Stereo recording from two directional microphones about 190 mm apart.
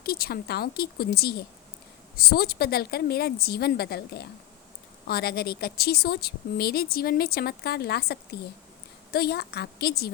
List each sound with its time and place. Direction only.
0.0 s a woman's voice: 55° left (ahead or behind)